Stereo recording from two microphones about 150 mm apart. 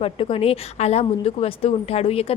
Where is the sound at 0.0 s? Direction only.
40° left (ahead or behind).